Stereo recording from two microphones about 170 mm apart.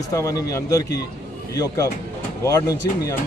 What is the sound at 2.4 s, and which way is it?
Speech, 20° left (ahead or behind).